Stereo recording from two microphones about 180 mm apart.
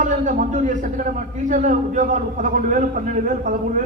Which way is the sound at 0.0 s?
45° right (ahead or behind).